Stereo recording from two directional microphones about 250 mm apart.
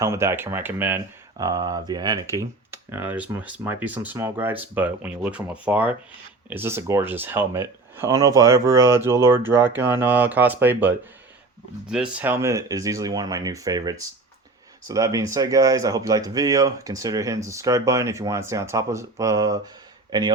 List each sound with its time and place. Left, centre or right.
0.0 s speech: centre